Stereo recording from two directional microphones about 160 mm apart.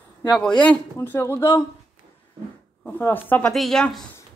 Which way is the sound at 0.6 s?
10° left (ahead or behind).